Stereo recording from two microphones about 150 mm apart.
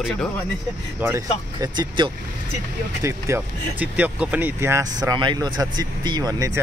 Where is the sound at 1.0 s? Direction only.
20° right (ahead or behind).